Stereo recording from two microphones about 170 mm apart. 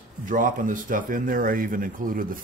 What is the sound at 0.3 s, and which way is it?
Speech, 50° right (ahead or behind).